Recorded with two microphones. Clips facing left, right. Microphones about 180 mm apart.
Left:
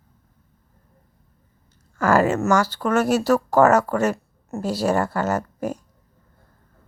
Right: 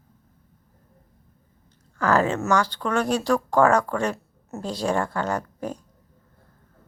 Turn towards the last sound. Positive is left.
turn(degrees=10)  # may be behind; listen again after turning